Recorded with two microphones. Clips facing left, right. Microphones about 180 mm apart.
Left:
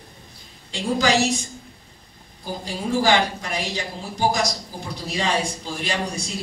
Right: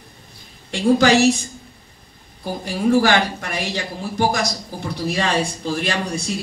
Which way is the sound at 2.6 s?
65° right (ahead or behind).